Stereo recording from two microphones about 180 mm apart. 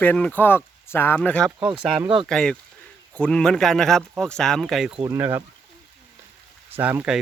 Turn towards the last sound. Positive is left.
turn(degrees=-5)  # may be behind; listen again after turning